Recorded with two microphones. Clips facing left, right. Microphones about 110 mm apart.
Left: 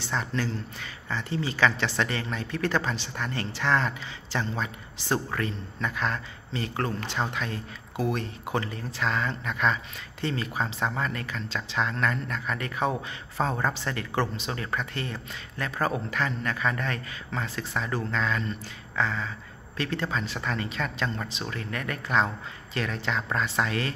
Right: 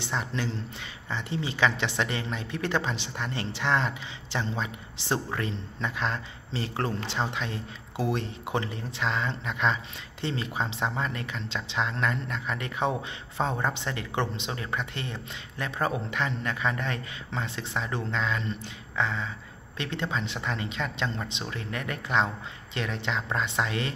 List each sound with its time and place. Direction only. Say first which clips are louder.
0.0 s speech: left 1 dB; 20° right (ahead or behind)